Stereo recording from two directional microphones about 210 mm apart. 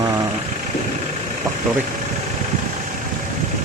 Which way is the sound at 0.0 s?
15° right (ahead or behind).